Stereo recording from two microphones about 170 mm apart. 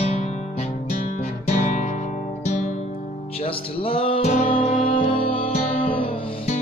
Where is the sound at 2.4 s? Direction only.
45° left (ahead or behind).